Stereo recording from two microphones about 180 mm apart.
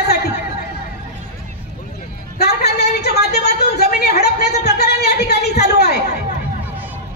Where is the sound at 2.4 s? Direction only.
65° left (ahead or behind).